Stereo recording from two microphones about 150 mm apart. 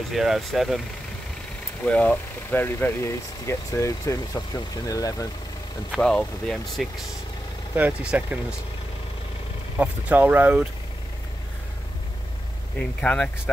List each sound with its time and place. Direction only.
0.1 s speech: centre (ahead or behind)
1.9 s speech: 10° left (ahead or behind)
5.9 s speech: 5° left (ahead or behind)
7.7 s speech: 10° right (ahead or behind)
9.8 s speech: 10° right (ahead or behind)
12.7 s speech: 10° left (ahead or behind)